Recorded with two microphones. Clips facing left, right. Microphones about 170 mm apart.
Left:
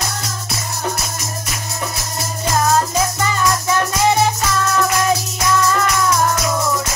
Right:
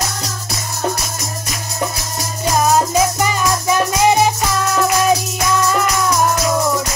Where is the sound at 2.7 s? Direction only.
15° right (ahead or behind).